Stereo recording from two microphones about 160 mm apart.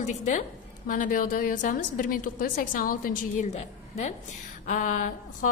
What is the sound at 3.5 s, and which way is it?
A woman's voice, 45° left (ahead or behind).